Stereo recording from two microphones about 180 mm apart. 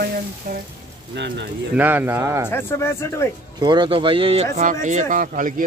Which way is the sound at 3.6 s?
25° right (ahead or behind).